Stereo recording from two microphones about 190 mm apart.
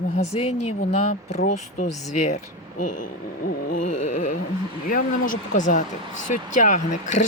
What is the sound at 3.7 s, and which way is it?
Speech, 40° left (ahead or behind).